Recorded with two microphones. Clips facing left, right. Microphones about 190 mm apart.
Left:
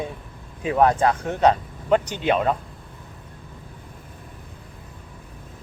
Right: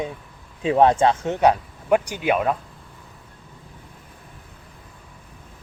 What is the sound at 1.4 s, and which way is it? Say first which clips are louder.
Speech: left 1 dB; 10° right (ahead or behind).